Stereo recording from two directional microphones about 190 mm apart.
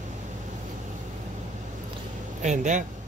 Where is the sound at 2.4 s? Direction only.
40° right (ahead or behind).